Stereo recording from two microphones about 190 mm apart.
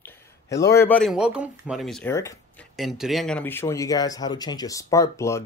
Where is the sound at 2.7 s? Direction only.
Centre (ahead or behind).